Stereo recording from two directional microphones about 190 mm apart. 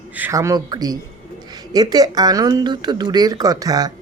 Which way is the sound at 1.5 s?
20° right (ahead or behind).